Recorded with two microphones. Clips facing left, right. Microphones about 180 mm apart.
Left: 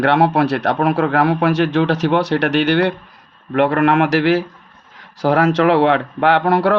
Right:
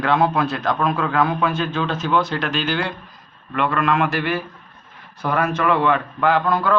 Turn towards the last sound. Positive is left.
turn(degrees=75)  # may be behind; listen again after turning